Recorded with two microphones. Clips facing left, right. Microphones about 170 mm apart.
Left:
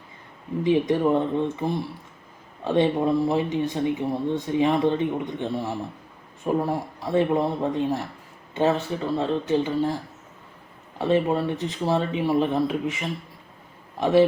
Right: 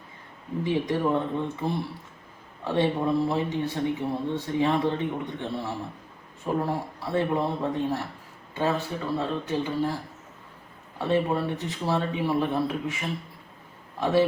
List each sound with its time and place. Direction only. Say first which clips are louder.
0.6 s speech: left 5 dB; 20° left (ahead or behind)
9.1 s speech: left 5 dB; 20° left (ahead or behind)
10.9 s speech: left 3 dB; 20° left (ahead or behind)